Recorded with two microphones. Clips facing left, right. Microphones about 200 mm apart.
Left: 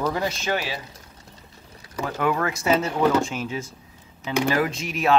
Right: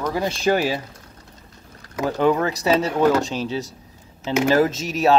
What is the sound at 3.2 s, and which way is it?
Speech, 35° right (ahead or behind).